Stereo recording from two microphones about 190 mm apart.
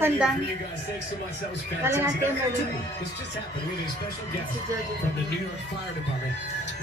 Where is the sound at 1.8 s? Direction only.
10° right (ahead or behind).